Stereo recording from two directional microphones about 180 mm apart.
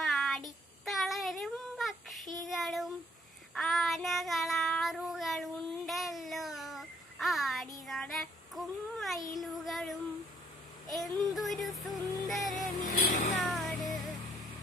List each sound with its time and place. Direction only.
0.0 s child singing: centre (ahead or behind)
9.3 s a sound: centre (ahead or behind)
11.0 s music: centre (ahead or behind)
12.9 s vehicle: 50° left (ahead or behind)
13.4 s music: centre (ahead or behind)